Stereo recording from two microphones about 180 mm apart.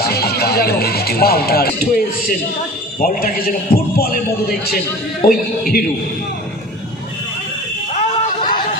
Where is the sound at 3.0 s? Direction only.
50° left (ahead or behind).